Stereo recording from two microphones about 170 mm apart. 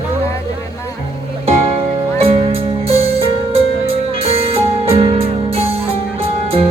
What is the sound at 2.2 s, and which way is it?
Music, 35° right (ahead or behind).